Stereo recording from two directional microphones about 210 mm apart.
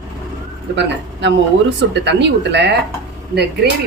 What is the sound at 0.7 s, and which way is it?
Speech, 55° right (ahead or behind).